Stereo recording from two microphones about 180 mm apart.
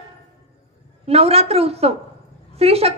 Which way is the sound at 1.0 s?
35° right (ahead or behind).